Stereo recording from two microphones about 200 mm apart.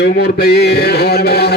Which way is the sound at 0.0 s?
55° left (ahead or behind).